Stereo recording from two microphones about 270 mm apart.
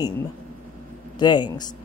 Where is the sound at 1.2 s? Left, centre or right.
Centre.